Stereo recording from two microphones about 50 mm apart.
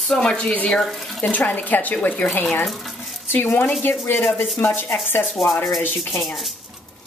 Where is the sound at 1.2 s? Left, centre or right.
Left.